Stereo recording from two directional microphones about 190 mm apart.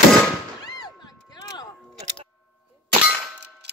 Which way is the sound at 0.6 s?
20° left (ahead or behind).